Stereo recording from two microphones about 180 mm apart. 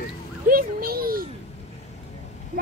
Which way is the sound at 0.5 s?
55° right (ahead or behind).